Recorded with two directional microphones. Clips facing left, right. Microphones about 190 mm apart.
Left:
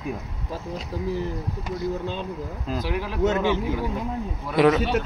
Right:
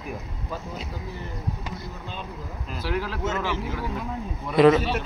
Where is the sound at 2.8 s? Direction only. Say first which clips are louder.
Left 3 dB; 15° left (ahead or behind).